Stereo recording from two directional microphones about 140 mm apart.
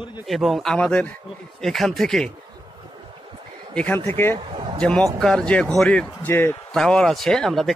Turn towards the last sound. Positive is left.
turn(degrees=0)  # may be behind; listen again after turning